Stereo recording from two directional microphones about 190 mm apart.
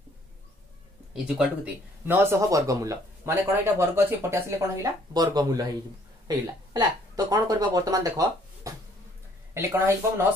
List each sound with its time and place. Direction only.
1.1 s a woman's voice: 5° right (ahead or behind)